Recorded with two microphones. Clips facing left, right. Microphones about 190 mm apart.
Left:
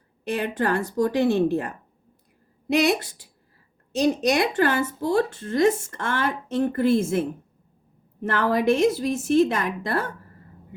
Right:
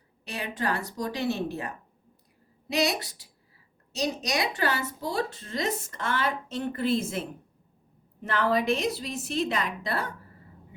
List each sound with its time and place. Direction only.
0.3 s speech: 55° left (ahead or behind)